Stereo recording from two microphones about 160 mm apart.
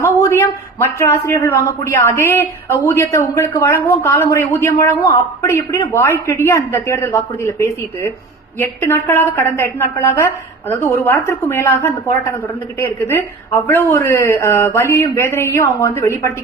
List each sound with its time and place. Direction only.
0.0 s speech: 15° left (ahead or behind)